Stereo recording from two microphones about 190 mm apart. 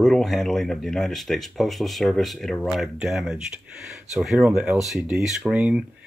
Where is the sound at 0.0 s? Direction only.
Centre (ahead or behind).